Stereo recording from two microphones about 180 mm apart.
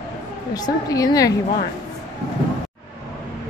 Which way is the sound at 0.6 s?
20° left (ahead or behind).